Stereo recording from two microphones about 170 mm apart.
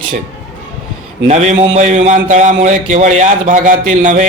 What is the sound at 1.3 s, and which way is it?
A man's voice, 40° right (ahead or behind).